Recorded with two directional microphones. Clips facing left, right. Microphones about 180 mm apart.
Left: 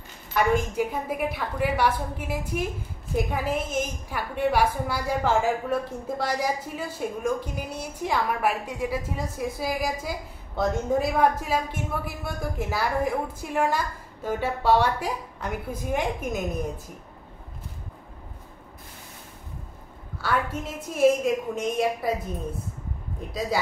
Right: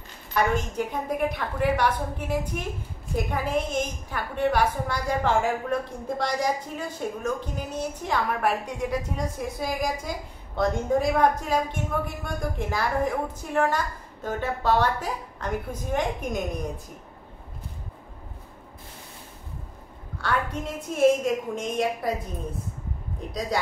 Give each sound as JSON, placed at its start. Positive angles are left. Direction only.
{"t": 0.6, "sound": "a woman's voice", "side_deg": 10}
{"t": 20.2, "sound": "a woman's voice", "side_deg": 5}